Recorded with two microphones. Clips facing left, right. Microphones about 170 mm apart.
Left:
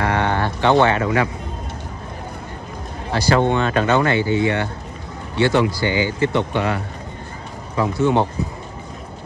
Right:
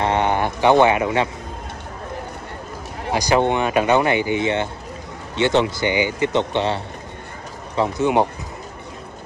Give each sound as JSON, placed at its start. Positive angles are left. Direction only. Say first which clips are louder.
{"t": 0.0, "sound": "speech", "louder": "right 1 dB", "side_deg": -20}
{"t": 3.1, "sound": "a man's voice", "louder": "even", "side_deg": -15}